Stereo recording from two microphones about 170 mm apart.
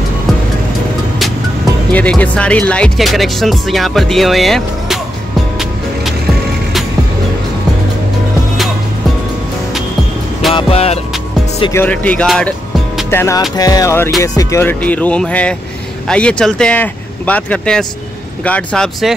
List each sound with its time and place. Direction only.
1.9 s speech: 10° left (ahead or behind)
10.5 s music: 35° left (ahead or behind)
11.7 s speech: 10° left (ahead or behind)
13.6 s music: 20° left (ahead or behind)
14.2 s speech: 20° left (ahead or behind); by 19.1 s centre (ahead or behind)